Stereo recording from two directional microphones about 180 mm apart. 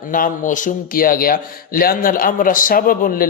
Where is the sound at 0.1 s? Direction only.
45° left (ahead or behind).